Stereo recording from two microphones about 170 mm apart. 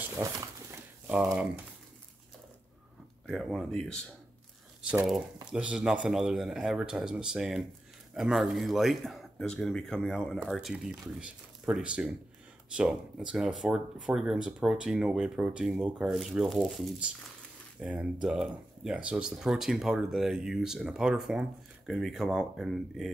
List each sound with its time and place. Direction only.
0.0 s a sound: 20° right (ahead or behind)
1.0 s speech: 10° right (ahead or behind)
3.3 s speech: centre (ahead or behind)